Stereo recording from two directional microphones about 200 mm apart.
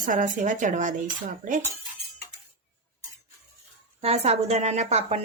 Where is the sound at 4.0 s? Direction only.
30° right (ahead or behind).